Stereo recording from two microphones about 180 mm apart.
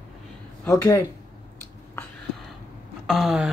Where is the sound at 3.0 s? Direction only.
Centre (ahead or behind).